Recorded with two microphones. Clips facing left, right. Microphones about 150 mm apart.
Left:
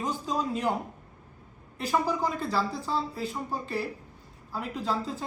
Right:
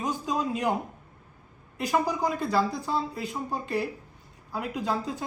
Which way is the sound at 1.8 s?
15° right (ahead or behind).